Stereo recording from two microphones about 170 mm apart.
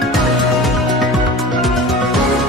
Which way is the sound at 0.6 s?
Centre (ahead or behind).